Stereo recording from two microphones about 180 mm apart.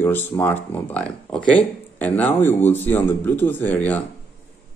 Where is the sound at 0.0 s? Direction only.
10° left (ahead or behind).